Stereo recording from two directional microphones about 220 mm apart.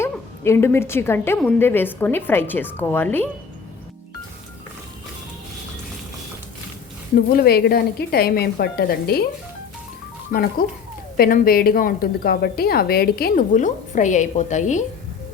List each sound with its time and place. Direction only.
0.0 s a woman's voice: 10° left (ahead or behind)
7.3 s speech: 45° left (ahead or behind)
10.6 s a woman's voice: 40° left (ahead or behind)